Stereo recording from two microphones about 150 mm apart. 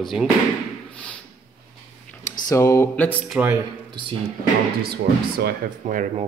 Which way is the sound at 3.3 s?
10° right (ahead or behind).